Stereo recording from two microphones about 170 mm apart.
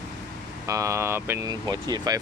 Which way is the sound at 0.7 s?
20° right (ahead or behind).